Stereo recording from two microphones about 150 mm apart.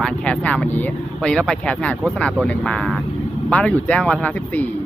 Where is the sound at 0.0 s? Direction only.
5° left (ahead or behind).